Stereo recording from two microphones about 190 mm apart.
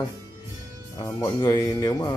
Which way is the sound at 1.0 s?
15° left (ahead or behind).